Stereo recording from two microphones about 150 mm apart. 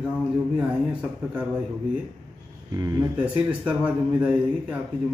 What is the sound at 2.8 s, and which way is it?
Speech, 20° right (ahead or behind).